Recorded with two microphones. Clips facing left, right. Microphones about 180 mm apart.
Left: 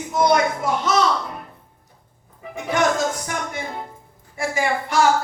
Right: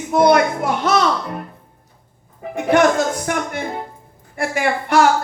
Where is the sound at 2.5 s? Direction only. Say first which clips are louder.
Right 6 dB; 60° right (ahead or behind).